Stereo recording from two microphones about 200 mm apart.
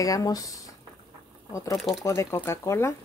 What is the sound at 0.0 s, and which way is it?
Speech, 15° left (ahead or behind).